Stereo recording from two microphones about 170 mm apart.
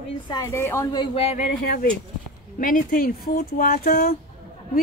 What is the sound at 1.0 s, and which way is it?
Speech, 35° left (ahead or behind).